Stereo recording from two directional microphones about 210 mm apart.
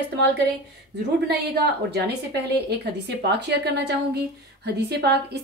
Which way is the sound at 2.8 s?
50° right (ahead or behind).